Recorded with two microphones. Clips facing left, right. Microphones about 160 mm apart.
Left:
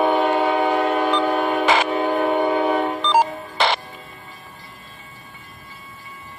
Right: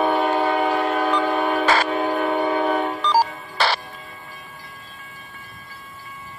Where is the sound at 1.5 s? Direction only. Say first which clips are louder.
Left 1 dB; 15° left (ahead or behind).